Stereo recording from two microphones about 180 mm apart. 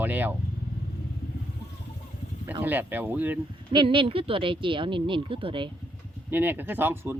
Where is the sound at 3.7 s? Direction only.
25° right (ahead or behind).